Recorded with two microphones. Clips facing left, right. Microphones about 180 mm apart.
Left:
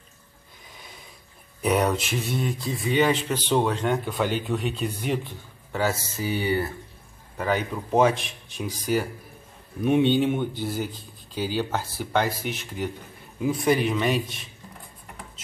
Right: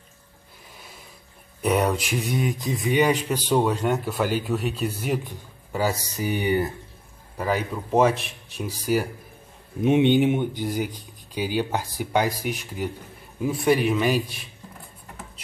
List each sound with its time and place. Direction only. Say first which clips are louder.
1.6 s speech: even; 5° right (ahead or behind)
7.3 s speech: even; 5° right (ahead or behind)
9.8 s speech: right 2 dB; 20° right (ahead or behind); by 14.2 s centre (ahead or behind)